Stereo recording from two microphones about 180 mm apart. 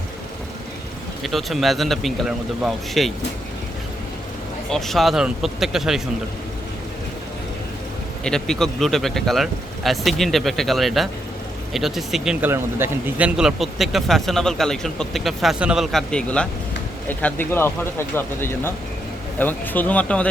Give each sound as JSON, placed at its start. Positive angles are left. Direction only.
{"t": 1.2, "sound": "speech", "side_deg": 0}
{"t": 4.7, "sound": "speech", "side_deg": 0}
{"t": 8.2, "sound": "speech", "side_deg": 5}